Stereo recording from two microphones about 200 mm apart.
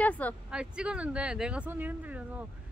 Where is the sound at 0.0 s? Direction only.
5° left (ahead or behind).